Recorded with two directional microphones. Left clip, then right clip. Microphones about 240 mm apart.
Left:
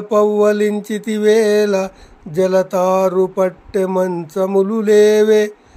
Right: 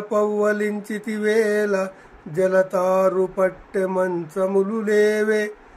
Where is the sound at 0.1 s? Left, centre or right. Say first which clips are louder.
Left 7 dB; left.